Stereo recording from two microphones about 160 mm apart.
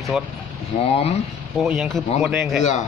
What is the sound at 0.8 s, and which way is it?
Speech, 40° left (ahead or behind).